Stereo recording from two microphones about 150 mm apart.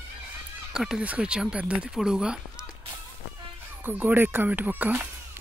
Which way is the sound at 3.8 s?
10° right (ahead or behind).